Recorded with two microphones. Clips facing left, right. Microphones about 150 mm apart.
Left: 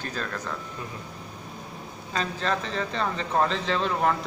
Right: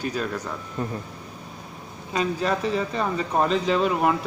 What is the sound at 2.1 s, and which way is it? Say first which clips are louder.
Speech: right 4 dB; 10° right (ahead or behind).